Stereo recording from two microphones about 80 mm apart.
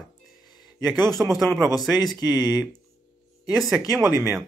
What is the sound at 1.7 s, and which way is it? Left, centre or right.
Speech, left.